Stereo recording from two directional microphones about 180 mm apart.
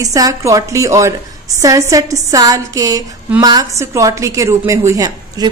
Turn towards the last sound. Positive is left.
turn(degrees=-15)  # may be behind; listen again after turning